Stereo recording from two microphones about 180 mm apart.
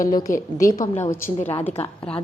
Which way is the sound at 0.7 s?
15° left (ahead or behind).